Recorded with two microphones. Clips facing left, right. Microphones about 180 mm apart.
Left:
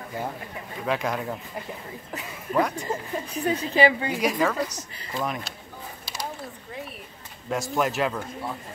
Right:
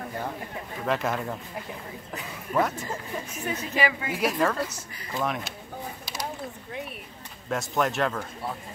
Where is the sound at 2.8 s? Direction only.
30° left (ahead or behind).